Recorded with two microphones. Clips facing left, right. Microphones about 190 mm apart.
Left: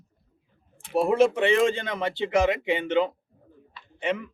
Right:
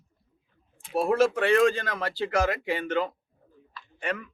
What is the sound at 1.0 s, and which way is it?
Speech, 20° left (ahead or behind).